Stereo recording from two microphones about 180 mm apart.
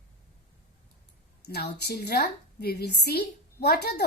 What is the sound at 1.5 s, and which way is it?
A woman's voice, 65° left (ahead or behind).